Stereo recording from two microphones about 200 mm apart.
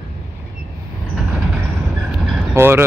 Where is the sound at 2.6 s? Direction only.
10° right (ahead or behind).